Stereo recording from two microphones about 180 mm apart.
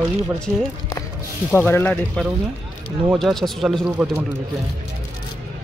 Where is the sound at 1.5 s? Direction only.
10° left (ahead or behind).